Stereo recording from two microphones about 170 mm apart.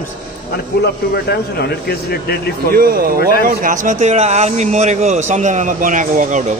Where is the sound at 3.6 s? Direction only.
50° right (ahead or behind).